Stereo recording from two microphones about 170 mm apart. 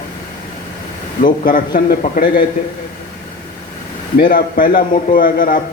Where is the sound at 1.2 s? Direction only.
55° left (ahead or behind).